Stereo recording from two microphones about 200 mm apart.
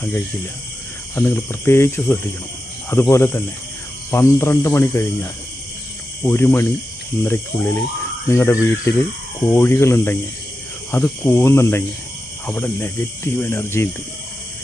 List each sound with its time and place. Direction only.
1.1 s speech: 10° left (ahead or behind)
6.2 s speech: 10° left (ahead or behind)